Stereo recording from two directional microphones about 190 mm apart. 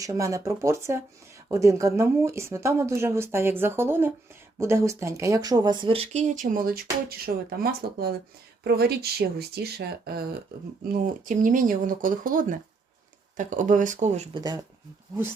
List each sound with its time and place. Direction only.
0.0 s speech: 15° right (ahead or behind); by 14.3 s 40° right (ahead or behind)
14.3 s speech: 20° right (ahead or behind)